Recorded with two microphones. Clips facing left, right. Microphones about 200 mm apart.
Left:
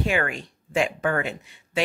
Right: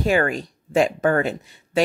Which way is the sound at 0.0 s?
40° right (ahead or behind).